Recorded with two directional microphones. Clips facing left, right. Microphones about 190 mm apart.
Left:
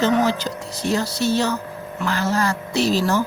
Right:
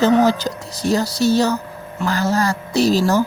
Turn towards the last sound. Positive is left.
turn(degrees=-40)  # may be behind; listen again after turning